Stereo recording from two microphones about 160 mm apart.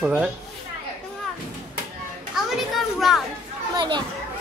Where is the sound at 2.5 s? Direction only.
Centre (ahead or behind).